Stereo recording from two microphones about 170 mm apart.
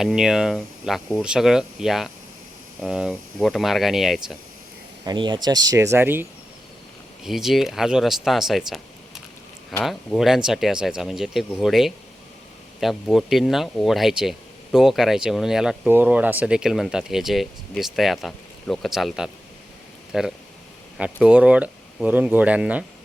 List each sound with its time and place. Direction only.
0.0 s speech: 5° right (ahead or behind)
5.0 s speech: 25° right (ahead or behind)
7.3 s speech: centre (ahead or behind)